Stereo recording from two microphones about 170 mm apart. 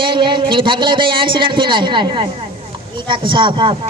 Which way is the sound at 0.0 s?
30° right (ahead or behind).